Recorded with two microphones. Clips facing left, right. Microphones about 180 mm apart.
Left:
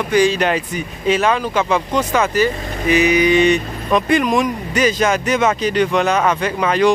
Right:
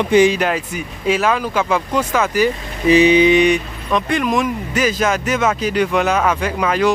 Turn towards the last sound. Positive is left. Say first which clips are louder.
# left 2 dB
turn(degrees=-5)  # may be behind; listen again after turning